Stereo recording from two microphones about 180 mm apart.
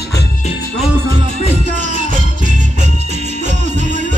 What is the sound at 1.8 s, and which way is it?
Music, 45° right (ahead or behind).